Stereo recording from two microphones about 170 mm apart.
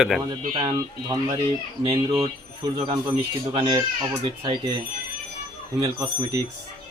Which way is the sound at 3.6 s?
25° right (ahead or behind).